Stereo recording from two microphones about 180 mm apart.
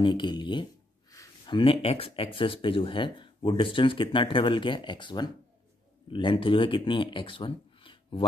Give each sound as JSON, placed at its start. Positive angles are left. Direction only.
{"t": 0.0, "sound": "speech", "side_deg": 25}